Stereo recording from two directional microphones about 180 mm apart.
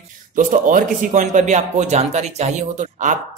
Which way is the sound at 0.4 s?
45° right (ahead or behind).